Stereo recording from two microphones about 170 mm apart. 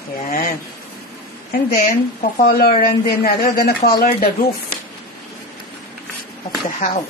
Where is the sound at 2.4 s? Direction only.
65° left (ahead or behind).